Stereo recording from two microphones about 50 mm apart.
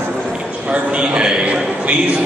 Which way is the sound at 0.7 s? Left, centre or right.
Centre.